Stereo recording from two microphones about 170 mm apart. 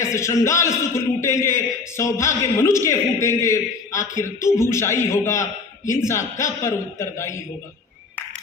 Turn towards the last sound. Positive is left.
turn(degrees=15)  # may be behind; listen again after turning